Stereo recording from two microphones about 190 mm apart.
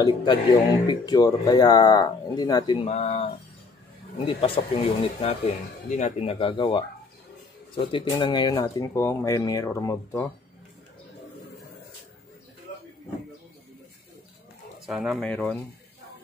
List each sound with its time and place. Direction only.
0.0 s speech: 25° left (ahead or behind)
14.9 s speech: centre (ahead or behind)